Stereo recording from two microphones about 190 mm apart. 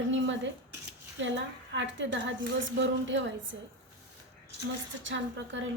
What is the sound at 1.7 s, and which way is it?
A woman's voice, 75° right (ahead or behind).